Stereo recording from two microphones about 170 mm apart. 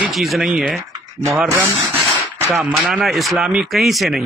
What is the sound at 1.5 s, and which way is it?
Rub, 15° right (ahead or behind).